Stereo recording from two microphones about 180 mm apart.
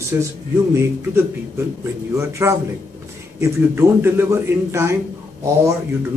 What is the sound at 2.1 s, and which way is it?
Speech, 15° right (ahead or behind).